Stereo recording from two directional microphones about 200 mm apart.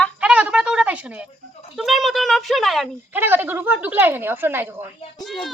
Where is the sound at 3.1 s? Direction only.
10° right (ahead or behind).